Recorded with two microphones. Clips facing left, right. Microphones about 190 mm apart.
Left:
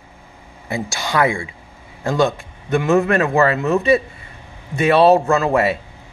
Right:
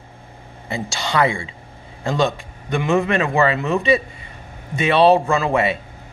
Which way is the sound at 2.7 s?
Centre (ahead or behind).